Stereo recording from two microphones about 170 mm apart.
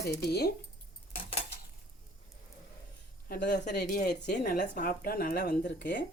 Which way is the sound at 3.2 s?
60° left (ahead or behind).